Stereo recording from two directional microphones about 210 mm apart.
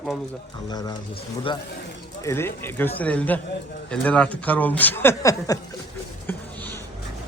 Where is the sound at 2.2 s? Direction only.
10° left (ahead or behind).